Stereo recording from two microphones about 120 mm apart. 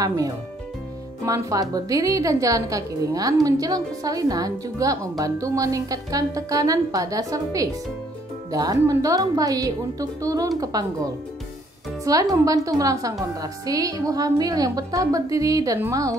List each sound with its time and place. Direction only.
1.2 s a woman's voice: 30° right (ahead or behind)
12.0 s a woman's voice: 30° right (ahead or behind)